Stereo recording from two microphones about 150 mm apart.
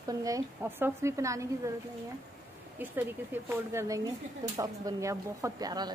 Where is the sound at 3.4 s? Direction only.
20° right (ahead or behind).